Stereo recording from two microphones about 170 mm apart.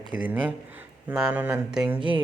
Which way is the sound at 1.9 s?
30° right (ahead or behind).